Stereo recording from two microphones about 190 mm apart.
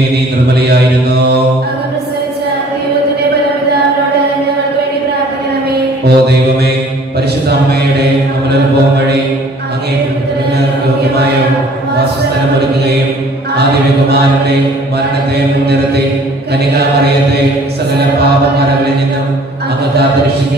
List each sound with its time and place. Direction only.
6.0 s music: 60° right (ahead or behind)